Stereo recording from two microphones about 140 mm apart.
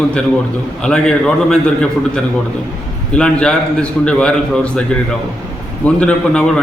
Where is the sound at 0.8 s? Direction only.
5° left (ahead or behind).